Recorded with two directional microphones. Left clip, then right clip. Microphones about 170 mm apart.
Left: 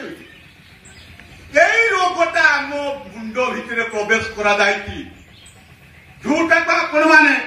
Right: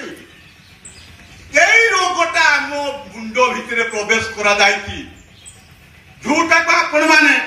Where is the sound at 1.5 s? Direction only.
45° left (ahead or behind).